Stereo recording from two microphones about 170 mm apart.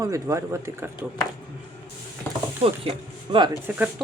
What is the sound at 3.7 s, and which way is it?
Speech, 10° right (ahead or behind).